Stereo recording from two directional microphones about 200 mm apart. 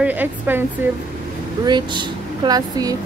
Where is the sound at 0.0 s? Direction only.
10° right (ahead or behind).